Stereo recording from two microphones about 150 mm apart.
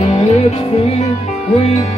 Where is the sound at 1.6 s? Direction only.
45° left (ahead or behind).